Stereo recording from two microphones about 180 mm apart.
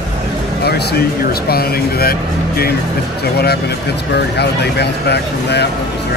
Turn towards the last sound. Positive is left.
turn(degrees=65)  # may be behind; listen again after turning